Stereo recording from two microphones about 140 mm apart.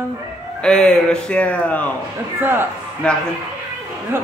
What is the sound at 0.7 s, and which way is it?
Speech, 5° left (ahead or behind).